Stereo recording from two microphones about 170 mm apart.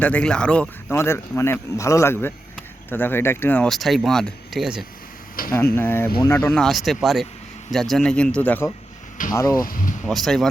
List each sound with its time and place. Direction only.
0.0 s speech: 5° left (ahead or behind)
5.5 s speech: 15° left (ahead or behind)
6.5 s speech: centre (ahead or behind); by 9.6 s 20° left (ahead or behind)
9.6 s speech: 55° left (ahead or behind)
10.1 s speech: centre (ahead or behind)